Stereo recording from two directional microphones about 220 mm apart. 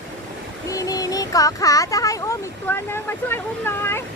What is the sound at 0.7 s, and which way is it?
Speech, 15° left (ahead or behind).